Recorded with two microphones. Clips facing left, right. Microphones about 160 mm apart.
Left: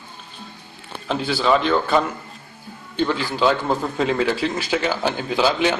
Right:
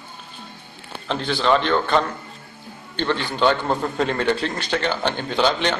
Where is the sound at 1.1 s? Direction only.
5° left (ahead or behind).